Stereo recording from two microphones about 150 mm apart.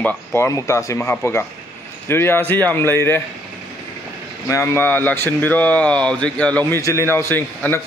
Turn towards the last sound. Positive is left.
turn(degrees=15)  # may be behind; listen again after turning